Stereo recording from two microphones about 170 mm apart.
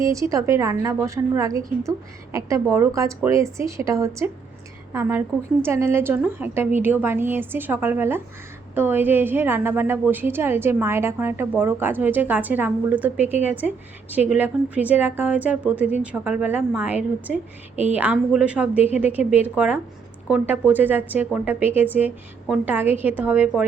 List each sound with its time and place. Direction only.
0.0 s a woman's voice: 20° right (ahead or behind)